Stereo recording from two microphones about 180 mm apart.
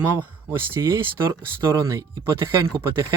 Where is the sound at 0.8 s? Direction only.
15° right (ahead or behind).